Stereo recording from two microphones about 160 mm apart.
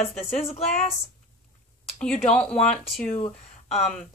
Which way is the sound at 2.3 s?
5° left (ahead or behind).